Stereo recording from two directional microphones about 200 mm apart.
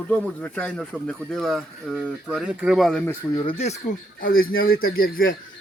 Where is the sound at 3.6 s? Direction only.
40° left (ahead or behind).